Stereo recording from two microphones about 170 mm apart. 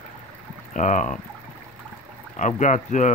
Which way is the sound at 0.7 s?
45° left (ahead or behind).